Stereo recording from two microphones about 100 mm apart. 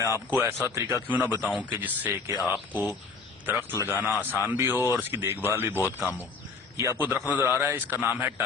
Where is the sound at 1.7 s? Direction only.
15° right (ahead or behind).